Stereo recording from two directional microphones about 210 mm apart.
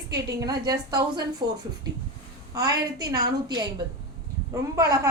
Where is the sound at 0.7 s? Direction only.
15° right (ahead or behind).